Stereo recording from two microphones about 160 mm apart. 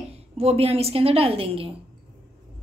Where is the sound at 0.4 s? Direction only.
40° right (ahead or behind).